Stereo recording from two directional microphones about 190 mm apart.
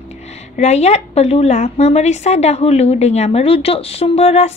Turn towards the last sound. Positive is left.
turn(degrees=35)  # may be behind; listen again after turning